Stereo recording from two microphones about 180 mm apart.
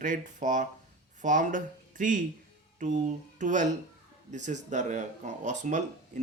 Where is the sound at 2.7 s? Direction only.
45° right (ahead or behind).